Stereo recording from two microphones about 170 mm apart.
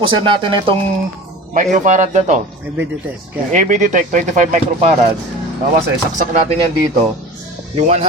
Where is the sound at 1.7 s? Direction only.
50° right (ahead or behind).